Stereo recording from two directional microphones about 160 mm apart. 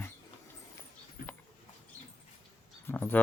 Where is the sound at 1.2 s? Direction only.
65° left (ahead or behind).